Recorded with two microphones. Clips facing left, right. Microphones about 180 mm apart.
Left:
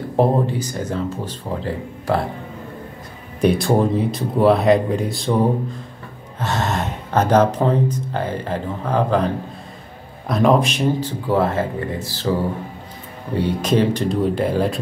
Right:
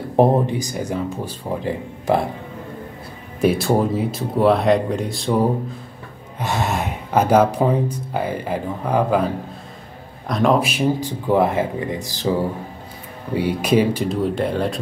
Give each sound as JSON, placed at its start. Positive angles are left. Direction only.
{"t": 0.1, "sound": "speech", "side_deg": -20}
{"t": 3.3, "sound": "speech", "side_deg": 0}
{"t": 6.4, "sound": "speech", "side_deg": -10}
{"t": 10.2, "sound": "speech", "side_deg": 0}
{"t": 13.3, "sound": "speech", "side_deg": -10}